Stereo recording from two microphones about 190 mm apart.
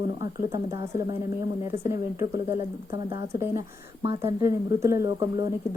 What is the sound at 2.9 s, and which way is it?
Speech, 20° right (ahead or behind).